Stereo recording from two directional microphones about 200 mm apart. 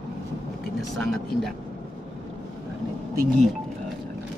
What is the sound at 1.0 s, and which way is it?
Speech, centre (ahead or behind).